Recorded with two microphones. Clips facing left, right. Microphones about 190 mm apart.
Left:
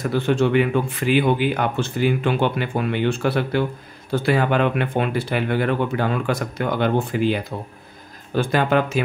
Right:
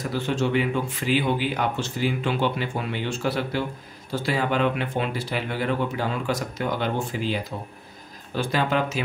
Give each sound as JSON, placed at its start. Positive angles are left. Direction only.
{"t": 0.1, "sound": "speech", "side_deg": 60}